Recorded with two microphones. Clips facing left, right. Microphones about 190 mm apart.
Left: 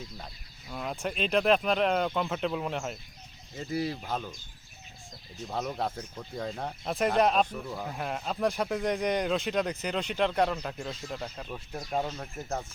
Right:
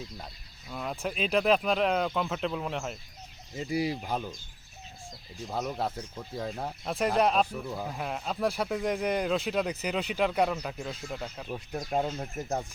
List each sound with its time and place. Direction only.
0.7 s speech: centre (ahead or behind)
3.6 s speech: 10° right (ahead or behind)
5.5 s speech: centre (ahead or behind)
11.9 s speech: 15° right (ahead or behind)